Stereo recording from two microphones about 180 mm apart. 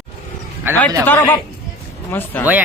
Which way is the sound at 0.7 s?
10° right (ahead or behind).